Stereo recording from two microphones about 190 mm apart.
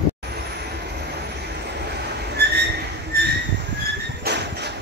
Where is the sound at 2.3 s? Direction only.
60° right (ahead or behind).